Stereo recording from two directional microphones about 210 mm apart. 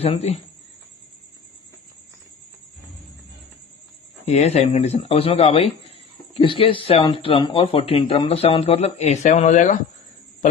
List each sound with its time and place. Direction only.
0.0 s speech: 30° left (ahead or behind)
4.3 s speech: 30° left (ahead or behind)